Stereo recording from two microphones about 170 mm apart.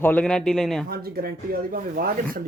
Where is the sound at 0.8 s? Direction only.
65° right (ahead or behind).